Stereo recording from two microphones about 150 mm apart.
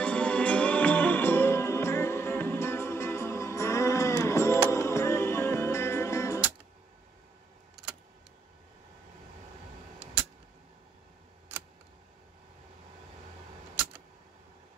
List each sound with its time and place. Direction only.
0.0 s music: 5° left (ahead or behind)